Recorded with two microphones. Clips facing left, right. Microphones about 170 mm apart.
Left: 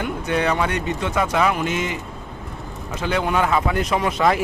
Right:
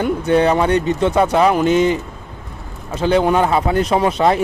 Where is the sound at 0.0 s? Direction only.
30° right (ahead or behind).